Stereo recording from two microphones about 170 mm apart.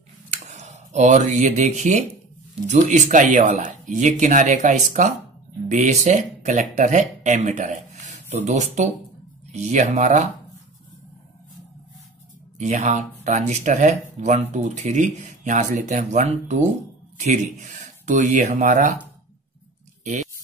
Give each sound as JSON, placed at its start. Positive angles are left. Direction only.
{"t": 0.3, "sound": "speech", "side_deg": -40}
{"t": 12.5, "sound": "speech", "side_deg": -45}
{"t": 18.0, "sound": "speech", "side_deg": -45}